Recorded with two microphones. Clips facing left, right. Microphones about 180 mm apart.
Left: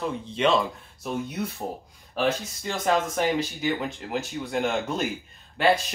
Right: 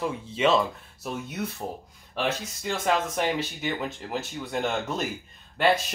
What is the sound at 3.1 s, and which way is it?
Speech, centre (ahead or behind).